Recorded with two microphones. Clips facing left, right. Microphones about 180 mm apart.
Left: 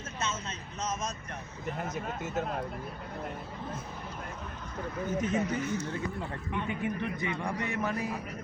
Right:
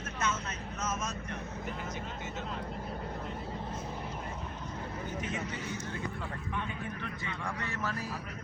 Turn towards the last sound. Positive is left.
turn(degrees=15)  # may be behind; listen again after turning